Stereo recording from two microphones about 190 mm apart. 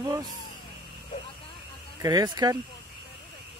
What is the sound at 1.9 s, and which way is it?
Speech, 20° right (ahead or behind).